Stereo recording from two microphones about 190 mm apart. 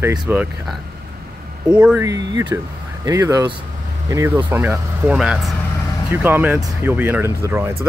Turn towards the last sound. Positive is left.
turn(degrees=-10)  # may be behind; listen again after turning